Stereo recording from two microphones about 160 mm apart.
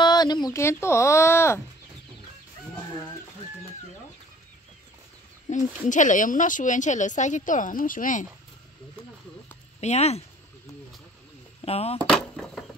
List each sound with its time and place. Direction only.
0.0 s speech: 25° left (ahead or behind)
5.5 s speech: 50° left (ahead or behind)
9.8 s speech: 45° left (ahead or behind)
11.6 s speech: 40° left (ahead or behind)
12.1 s a sound: 5° left (ahead or behind)